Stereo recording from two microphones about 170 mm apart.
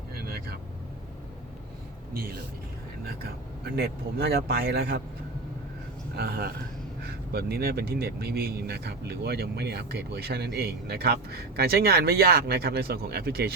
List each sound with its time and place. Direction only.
0.1 s vehicle: 65° right (ahead or behind)
4.2 s speech: 70° right (ahead or behind)
6.1 s speech: 65° right (ahead or behind)